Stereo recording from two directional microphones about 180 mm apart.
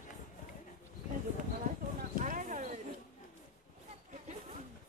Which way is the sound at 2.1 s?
45° right (ahead or behind).